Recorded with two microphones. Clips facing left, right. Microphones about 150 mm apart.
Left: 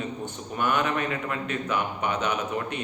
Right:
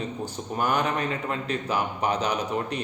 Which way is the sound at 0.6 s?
40° right (ahead or behind).